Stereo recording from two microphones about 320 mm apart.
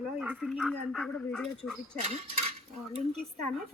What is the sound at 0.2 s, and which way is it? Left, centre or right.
Speech, centre.